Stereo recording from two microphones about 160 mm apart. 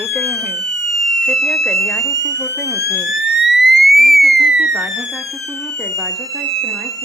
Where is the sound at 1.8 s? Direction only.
20° left (ahead or behind).